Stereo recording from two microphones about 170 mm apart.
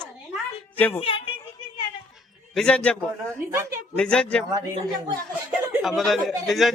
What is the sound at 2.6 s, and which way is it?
A man's voice, 5° left (ahead or behind).